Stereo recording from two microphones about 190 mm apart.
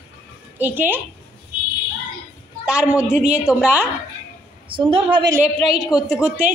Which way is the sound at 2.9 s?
5° right (ahead or behind).